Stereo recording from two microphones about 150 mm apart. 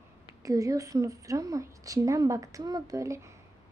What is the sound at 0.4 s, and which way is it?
A woman's voice, 25° right (ahead or behind).